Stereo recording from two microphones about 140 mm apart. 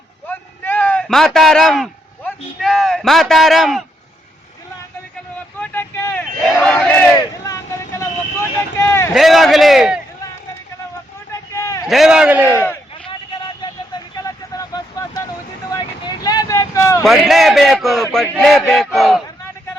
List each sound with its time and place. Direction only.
0.3 s a sound: 15° left (ahead or behind)
1.0 s a man's voice: centre (ahead or behind)
5.5 s vehicle: 15° left (ahead or behind)
6.6 s speech: 10° left (ahead or behind)
7.2 s vehicle: 25° left (ahead or behind)
8.8 s speech: 15° left (ahead or behind)
9.1 s a man's voice: centre (ahead or behind)
11.5 s a sound: 20° left (ahead or behind)
11.9 s a man's voice: 5° right (ahead or behind)
12.5 s speech: 20° left (ahead or behind)
13.9 s vehicle: 25° left (ahead or behind)
17.0 s a man's voice: centre (ahead or behind)